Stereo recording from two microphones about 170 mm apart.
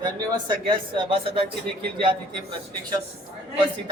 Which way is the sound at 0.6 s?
30° right (ahead or behind).